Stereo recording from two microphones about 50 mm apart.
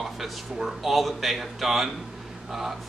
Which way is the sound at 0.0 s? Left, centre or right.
Centre.